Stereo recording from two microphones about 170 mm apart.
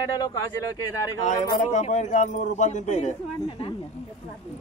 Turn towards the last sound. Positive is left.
turn(degrees=45)  # may be behind; listen again after turning